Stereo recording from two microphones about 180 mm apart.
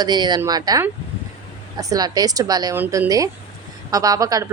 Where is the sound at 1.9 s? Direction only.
20° right (ahead or behind).